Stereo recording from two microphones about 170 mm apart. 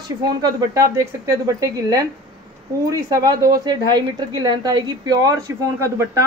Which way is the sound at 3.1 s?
20° right (ahead or behind).